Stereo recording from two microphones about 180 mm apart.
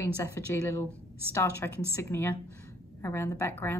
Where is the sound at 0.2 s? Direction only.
15° left (ahead or behind).